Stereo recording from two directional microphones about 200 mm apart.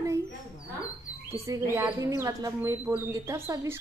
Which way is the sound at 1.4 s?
15° right (ahead or behind).